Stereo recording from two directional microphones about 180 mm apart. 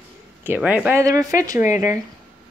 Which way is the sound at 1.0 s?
20° right (ahead or behind).